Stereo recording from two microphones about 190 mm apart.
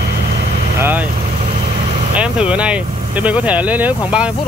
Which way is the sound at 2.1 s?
5° right (ahead or behind).